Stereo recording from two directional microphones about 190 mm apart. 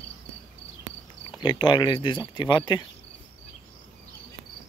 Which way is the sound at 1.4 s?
25° left (ahead or behind).